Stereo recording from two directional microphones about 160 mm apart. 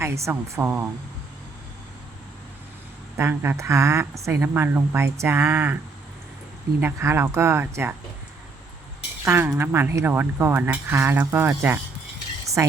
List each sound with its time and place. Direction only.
0.0 s speech: 15° right (ahead or behind)
3.2 s speech: 15° right (ahead or behind)
6.8 s speech: 15° right (ahead or behind)
9.2 s speech: 15° right (ahead or behind)